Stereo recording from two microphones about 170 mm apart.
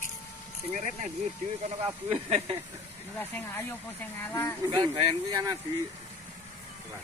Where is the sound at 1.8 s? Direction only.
35° right (ahead or behind).